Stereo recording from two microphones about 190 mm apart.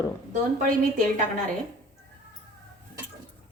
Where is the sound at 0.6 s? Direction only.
45° right (ahead or behind).